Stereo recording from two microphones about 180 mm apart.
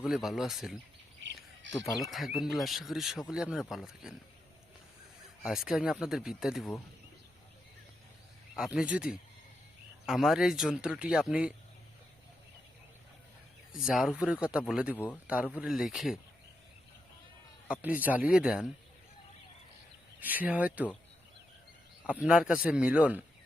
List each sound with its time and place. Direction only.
0.0 s speech: centre (ahead or behind)
1.2 s bird: 80° right
2.0 s speech: centre (ahead or behind)
5.4 s speech: centre (ahead or behind)
8.5 s speech: 5° right (ahead or behind)
13.8 s speech: centre (ahead or behind)
17.7 s speech: 10° right (ahead or behind)
20.1 s speech: 10° right (ahead or behind)
22.2 s speech: 5° right (ahead or behind)